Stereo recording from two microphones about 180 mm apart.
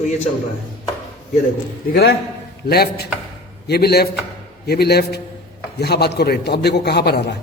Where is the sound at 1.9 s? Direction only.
60° left (ahead or behind).